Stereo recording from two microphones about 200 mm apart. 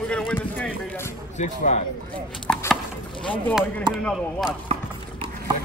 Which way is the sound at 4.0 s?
Centre (ahead or behind).